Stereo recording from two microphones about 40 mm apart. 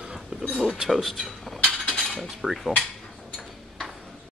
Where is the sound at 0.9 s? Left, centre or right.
Centre.